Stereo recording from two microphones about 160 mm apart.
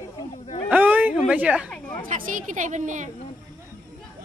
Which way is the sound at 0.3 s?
35° left (ahead or behind).